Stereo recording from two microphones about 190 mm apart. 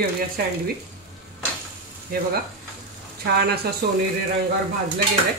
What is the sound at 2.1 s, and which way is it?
Speech, 50° right (ahead or behind).